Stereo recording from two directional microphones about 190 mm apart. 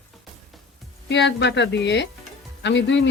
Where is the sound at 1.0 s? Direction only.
70° left (ahead or behind).